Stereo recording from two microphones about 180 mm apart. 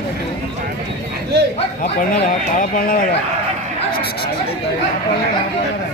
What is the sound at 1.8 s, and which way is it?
Speech, 50° left (ahead or behind).